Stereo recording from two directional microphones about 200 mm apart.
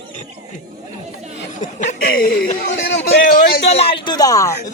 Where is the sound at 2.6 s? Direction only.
60° left (ahead or behind).